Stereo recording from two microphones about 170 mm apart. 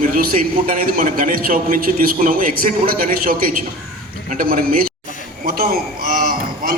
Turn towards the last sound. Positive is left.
turn(degrees=-55)  # may be behind; listen again after turning